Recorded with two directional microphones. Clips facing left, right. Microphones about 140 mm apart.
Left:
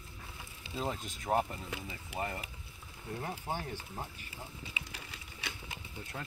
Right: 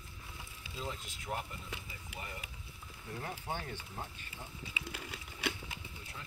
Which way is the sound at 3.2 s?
30° left (ahead or behind).